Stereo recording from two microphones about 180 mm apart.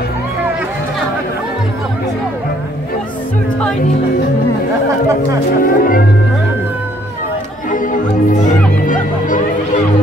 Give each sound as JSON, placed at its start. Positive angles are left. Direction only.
{"t": 5.6, "sound": "speech", "side_deg": 50}
{"t": 7.7, "sound": "music", "side_deg": 45}